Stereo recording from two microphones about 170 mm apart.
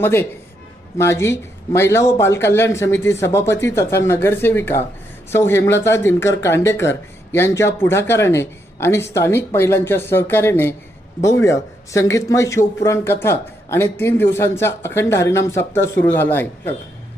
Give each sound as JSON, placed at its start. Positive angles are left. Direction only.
{"t": 0.0, "sound": "speech", "side_deg": 15}